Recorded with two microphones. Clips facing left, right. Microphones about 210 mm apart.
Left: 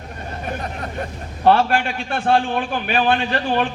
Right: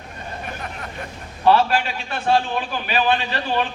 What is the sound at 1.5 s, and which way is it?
A man's voice, 55° left (ahead or behind).